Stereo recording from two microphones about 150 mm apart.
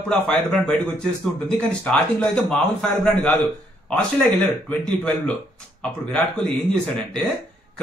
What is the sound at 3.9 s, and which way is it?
Speech, 10° left (ahead or behind).